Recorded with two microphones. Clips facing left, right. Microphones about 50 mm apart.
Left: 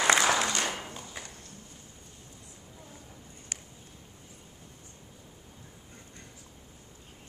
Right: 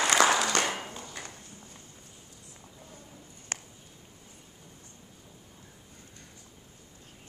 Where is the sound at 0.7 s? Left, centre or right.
Centre.